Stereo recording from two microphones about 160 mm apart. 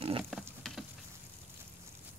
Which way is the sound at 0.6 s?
5° left (ahead or behind).